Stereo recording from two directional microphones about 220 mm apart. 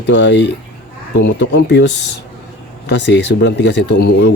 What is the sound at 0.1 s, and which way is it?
Speech, 55° left (ahead or behind).